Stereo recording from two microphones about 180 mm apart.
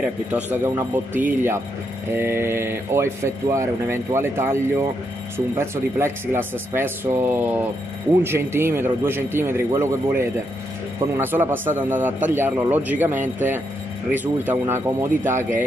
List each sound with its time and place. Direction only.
0.0 s speech: 10° right (ahead or behind)